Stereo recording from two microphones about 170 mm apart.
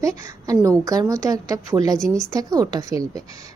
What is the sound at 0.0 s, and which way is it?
A woman's voice, 20° right (ahead or behind).